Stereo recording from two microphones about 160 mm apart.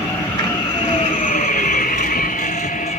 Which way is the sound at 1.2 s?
55° left (ahead or behind).